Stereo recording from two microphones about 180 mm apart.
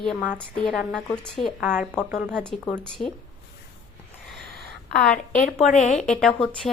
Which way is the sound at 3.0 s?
45° left (ahead or behind).